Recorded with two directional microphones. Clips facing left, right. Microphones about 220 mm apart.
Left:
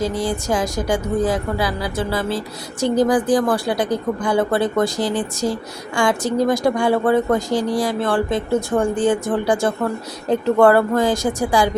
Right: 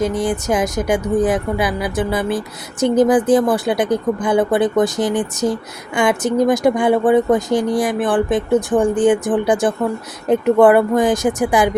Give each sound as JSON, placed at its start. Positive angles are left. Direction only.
{"t": 0.0, "sound": "speech", "side_deg": -20}